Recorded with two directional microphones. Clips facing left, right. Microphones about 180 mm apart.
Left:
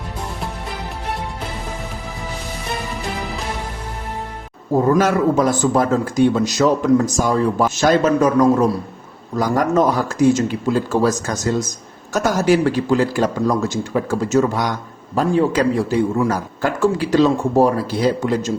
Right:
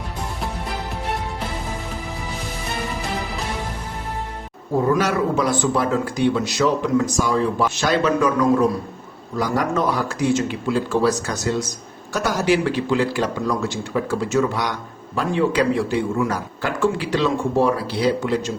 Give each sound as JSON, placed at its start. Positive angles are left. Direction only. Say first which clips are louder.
{"t": 4.9, "sound": "a man's voice", "louder": "left 4 dB", "side_deg": 45}